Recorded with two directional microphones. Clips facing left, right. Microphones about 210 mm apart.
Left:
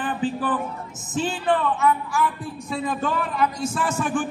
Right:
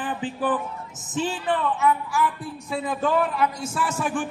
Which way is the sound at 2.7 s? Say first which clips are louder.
Right 1 dB; 5° right (ahead or behind).